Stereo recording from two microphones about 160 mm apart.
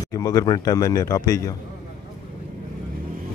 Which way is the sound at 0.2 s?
25° left (ahead or behind).